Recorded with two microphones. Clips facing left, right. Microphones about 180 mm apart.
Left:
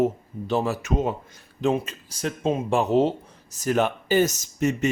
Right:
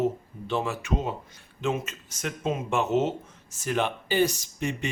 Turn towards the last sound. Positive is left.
turn(degrees=45)  # may be behind; listen again after turning